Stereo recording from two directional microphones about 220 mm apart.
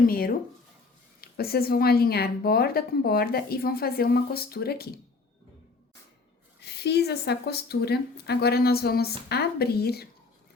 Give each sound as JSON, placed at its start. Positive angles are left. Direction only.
{"t": 0.1, "sound": "speech", "side_deg": 40}
{"t": 6.6, "sound": "speech", "side_deg": 50}